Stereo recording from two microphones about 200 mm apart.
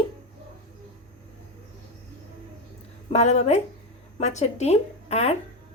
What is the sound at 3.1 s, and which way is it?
A woman's voice, 35° left (ahead or behind).